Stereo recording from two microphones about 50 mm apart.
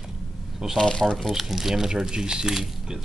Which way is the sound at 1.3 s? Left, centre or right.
Centre.